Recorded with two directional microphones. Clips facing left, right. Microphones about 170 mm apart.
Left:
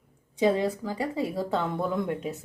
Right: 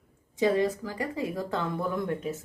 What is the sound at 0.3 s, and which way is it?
A woman's voice, 20° left (ahead or behind).